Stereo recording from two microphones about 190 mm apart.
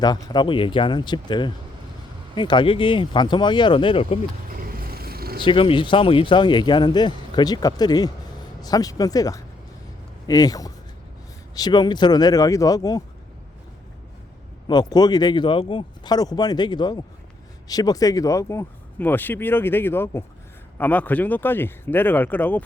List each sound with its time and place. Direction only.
0.0 s speech: 20° left (ahead or behind)
4.5 s purr: 50° right (ahead or behind)
5.4 s speech: 25° left (ahead or behind)
14.7 s speech: 20° left (ahead or behind)